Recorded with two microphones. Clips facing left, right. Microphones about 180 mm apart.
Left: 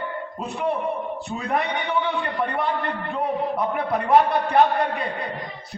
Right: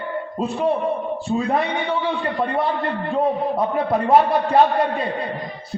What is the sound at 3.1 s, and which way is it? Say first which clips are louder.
A man's voice: right 5 dB; 30° right (ahead or behind).